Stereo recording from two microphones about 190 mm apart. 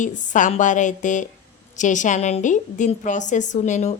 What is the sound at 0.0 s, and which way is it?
A woman's voice, 40° left (ahead or behind).